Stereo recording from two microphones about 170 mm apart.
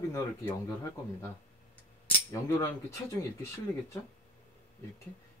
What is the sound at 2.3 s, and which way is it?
Speech, 20° left (ahead or behind).